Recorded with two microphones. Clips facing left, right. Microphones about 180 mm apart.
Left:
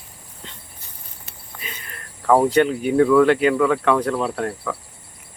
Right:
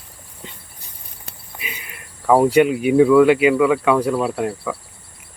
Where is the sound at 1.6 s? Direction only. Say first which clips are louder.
Right 2 dB; 10° right (ahead or behind).